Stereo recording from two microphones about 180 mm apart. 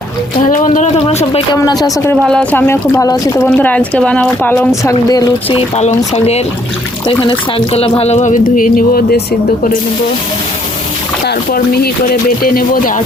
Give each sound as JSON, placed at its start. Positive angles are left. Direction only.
{"t": 0.4, "sound": "speech", "side_deg": 45}
{"t": 1.0, "sound": "a sound", "side_deg": 35}
{"t": 1.5, "sound": "speech", "side_deg": 20}
{"t": 2.2, "sound": "speech", "side_deg": 5}
{"t": 4.9, "sound": "speech", "side_deg": 20}
{"t": 5.5, "sound": "speech", "side_deg": 35}
{"t": 11.3, "sound": "speech", "side_deg": 60}